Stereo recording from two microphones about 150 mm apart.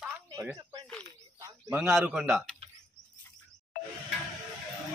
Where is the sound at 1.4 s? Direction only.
20° right (ahead or behind).